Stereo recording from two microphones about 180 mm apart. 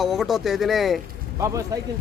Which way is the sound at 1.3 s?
15° right (ahead or behind).